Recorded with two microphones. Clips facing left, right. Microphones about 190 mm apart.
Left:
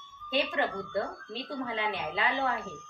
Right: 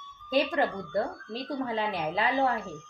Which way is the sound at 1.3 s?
40° right (ahead or behind).